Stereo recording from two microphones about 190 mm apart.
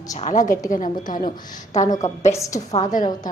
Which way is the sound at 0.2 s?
40° left (ahead or behind).